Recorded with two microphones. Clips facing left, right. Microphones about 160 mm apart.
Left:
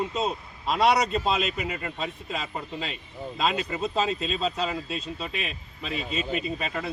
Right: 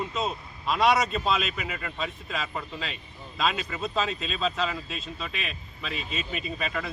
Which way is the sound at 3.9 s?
35° left (ahead or behind).